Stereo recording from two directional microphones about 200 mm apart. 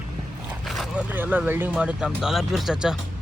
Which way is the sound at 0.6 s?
Centre (ahead or behind).